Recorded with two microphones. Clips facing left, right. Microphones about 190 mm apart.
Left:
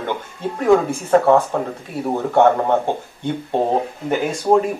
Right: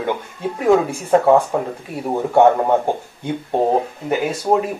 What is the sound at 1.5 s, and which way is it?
Speech, 10° right (ahead or behind).